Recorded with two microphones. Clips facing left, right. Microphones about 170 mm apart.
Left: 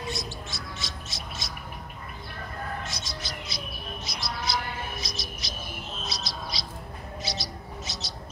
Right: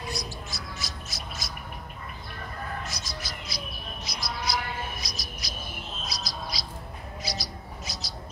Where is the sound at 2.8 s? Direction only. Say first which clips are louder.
Even; 25° left (ahead or behind).